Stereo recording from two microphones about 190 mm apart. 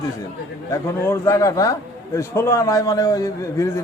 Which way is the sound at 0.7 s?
15° left (ahead or behind).